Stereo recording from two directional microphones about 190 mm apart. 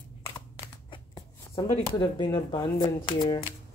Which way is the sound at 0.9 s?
25° left (ahead or behind).